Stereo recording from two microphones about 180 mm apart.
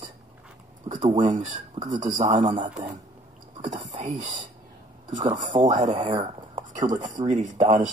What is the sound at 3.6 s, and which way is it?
Speech, 40° right (ahead or behind).